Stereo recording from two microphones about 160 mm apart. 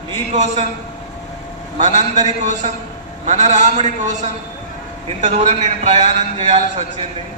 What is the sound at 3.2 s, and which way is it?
A man's voice, 45° right (ahead or behind).